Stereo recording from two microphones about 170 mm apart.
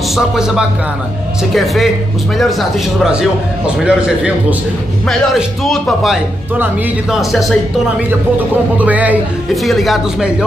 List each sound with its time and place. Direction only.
0.1 s a man's voice: 5° right (ahead or behind)
3.0 s a man's voice: 5° right (ahead or behind)
8.7 s a man's voice: 10° right (ahead or behind)